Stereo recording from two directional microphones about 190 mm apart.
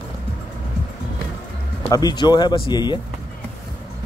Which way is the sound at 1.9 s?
20° left (ahead or behind).